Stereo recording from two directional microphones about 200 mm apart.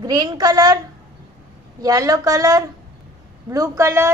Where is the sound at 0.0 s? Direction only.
20° right (ahead or behind).